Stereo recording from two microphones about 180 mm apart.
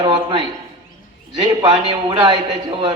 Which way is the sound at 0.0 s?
25° right (ahead or behind).